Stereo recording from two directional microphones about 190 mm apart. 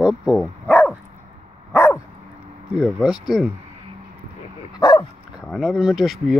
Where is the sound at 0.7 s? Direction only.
10° left (ahead or behind).